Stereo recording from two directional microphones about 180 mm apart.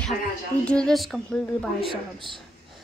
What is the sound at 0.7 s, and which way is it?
Speech, 5° left (ahead or behind).